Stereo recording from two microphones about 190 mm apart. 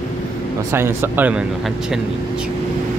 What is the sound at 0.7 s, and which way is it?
Speech, 10° right (ahead or behind).